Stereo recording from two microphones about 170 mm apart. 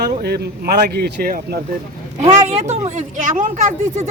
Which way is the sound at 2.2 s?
40° right (ahead or behind).